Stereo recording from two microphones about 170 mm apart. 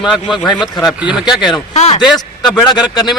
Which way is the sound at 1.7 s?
40° left (ahead or behind).